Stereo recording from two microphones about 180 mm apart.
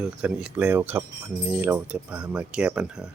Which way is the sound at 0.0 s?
5° right (ahead or behind).